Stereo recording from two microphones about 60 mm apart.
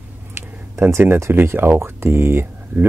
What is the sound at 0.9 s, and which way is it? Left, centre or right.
Speech, right.